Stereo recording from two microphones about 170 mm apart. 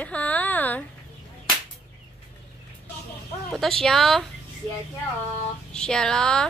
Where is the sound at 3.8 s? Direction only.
Centre (ahead or behind).